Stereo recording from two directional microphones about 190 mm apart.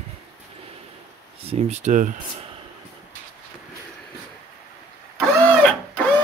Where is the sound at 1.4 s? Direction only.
35° right (ahead or behind).